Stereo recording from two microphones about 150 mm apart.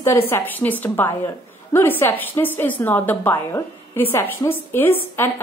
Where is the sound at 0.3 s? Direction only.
10° left (ahead or behind).